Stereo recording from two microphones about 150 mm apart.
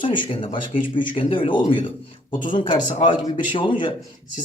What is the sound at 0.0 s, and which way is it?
Speech, 35° left (ahead or behind).